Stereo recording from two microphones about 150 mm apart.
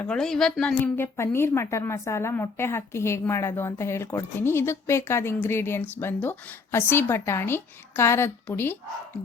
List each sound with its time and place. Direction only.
0.0 s a woman's voice: 5° left (ahead or behind)
0.9 s a woman's voice: 15° left (ahead or behind)